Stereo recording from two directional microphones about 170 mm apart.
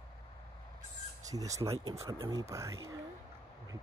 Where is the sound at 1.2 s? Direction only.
20° right (ahead or behind).